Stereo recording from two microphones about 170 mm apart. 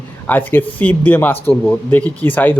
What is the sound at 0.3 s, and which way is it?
Speech, 10° left (ahead or behind).